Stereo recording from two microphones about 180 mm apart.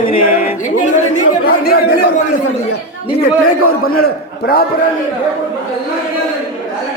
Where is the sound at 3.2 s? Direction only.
55° left (ahead or behind).